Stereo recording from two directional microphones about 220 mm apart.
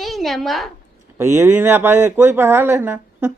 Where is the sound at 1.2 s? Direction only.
15° right (ahead or behind).